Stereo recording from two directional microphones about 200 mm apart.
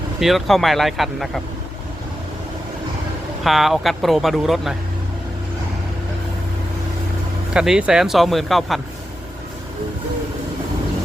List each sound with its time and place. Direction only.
0.2 s speech: centre (ahead or behind)
3.4 s speech: centre (ahead or behind)
7.5 s speech: 5° right (ahead or behind)